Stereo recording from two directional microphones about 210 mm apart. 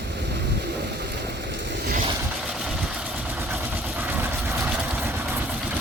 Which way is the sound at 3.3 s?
10° right (ahead or behind).